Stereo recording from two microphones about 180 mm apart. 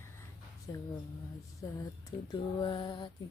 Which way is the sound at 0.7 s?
20° left (ahead or behind).